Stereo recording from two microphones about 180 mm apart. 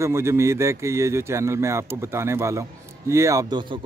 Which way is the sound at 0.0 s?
15° right (ahead or behind).